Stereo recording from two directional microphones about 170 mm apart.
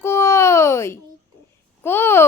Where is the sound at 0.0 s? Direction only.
15° left (ahead or behind).